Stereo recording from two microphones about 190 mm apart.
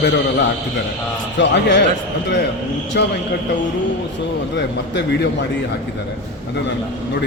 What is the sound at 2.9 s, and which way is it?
Speech, 60° left (ahead or behind).